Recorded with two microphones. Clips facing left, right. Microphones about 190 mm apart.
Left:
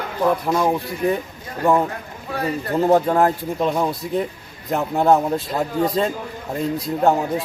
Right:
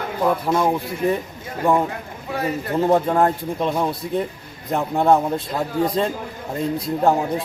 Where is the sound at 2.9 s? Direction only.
Centre (ahead or behind).